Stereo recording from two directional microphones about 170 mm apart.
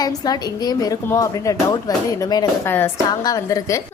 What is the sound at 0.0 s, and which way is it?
A woman's voice, 20° left (ahead or behind).